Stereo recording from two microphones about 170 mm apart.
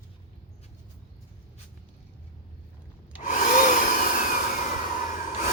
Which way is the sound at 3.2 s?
50° left (ahead or behind).